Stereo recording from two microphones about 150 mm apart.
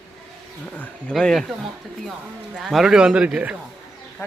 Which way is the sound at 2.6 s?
Centre (ahead or behind).